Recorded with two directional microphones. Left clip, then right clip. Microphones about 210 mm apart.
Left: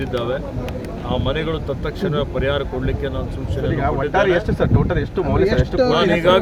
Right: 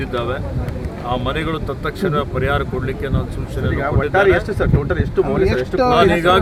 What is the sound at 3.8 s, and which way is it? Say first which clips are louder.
Speech: right 3 dB; 30° left (ahead or behind).